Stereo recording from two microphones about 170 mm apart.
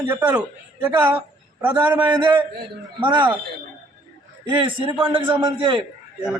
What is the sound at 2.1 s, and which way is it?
A man's voice, 25° right (ahead or behind).